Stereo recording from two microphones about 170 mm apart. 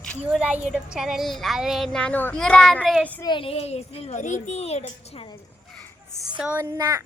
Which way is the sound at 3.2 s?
30° left (ahead or behind).